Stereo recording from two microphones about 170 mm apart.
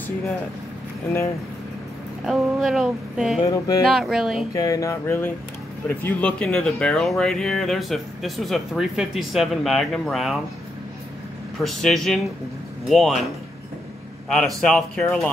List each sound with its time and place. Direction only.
2.2 s speech: centre (ahead or behind)
3.4 s speech: 20° left (ahead or behind)
3.9 s speech: centre (ahead or behind)
4.6 s a sound: 20° left (ahead or behind)
5.9 s speech: 10° left (ahead or behind)
11.6 s speech: centre (ahead or behind)
14.3 s speech: 5° left (ahead or behind)